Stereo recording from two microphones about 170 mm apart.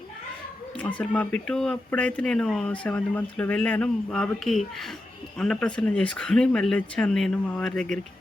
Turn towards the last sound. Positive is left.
turn(degrees=5)  # may be behind; listen again after turning